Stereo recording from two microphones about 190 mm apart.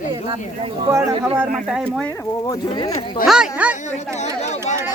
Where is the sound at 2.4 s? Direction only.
20° left (ahead or behind).